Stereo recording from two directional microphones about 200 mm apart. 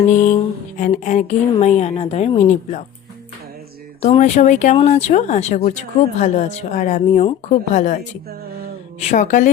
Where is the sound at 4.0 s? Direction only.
35° left (ahead or behind).